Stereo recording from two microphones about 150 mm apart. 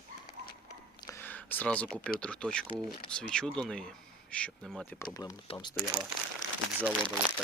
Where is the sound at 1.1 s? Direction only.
15° left (ahead or behind).